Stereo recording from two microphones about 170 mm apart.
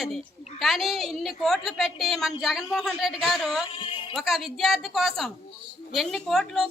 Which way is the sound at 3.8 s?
30° left (ahead or behind).